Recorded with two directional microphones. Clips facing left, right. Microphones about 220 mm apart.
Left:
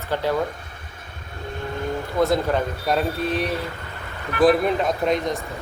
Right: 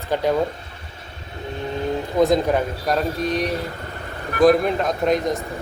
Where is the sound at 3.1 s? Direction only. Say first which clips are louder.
Right 1 dB; 35° right (ahead or behind).